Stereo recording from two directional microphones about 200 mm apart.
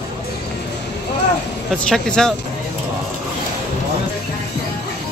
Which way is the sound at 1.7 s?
5° left (ahead or behind).